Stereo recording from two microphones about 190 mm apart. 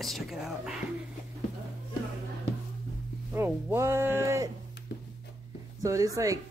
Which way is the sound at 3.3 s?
15° right (ahead or behind).